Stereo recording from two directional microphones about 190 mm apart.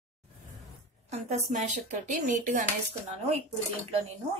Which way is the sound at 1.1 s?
40° right (ahead or behind).